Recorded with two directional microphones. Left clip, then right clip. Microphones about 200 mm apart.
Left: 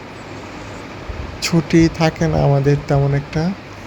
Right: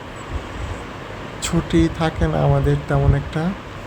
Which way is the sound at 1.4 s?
15° left (ahead or behind).